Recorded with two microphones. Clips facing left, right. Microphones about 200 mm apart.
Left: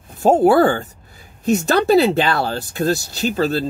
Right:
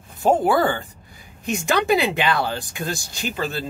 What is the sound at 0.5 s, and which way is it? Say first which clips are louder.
Speech: left 6 dB; 45° left (ahead or behind).